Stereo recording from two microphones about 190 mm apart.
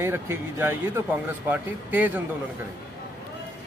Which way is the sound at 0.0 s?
10° right (ahead or behind).